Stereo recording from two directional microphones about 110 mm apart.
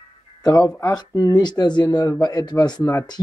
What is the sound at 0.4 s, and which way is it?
Speech, 35° left (ahead or behind).